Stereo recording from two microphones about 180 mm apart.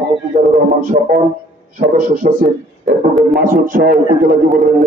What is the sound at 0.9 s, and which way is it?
A man's voice, 60° right (ahead or behind).